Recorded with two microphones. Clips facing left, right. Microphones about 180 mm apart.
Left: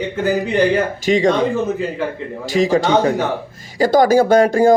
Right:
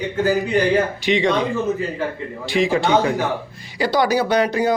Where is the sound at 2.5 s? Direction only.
40° left (ahead or behind).